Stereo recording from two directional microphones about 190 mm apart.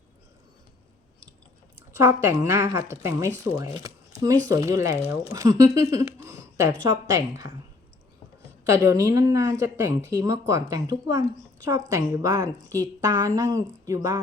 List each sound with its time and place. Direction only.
1.9 s speech: 15° right (ahead or behind)
6.1 s a sound: 15° right (ahead or behind)
6.8 s speech: 15° right (ahead or behind)
8.7 s speech: 15° right (ahead or behind)